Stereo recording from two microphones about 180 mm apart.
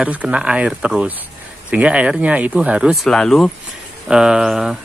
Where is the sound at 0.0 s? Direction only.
5° right (ahead or behind).